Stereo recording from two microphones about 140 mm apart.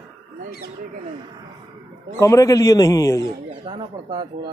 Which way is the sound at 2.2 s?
25° left (ahead or behind).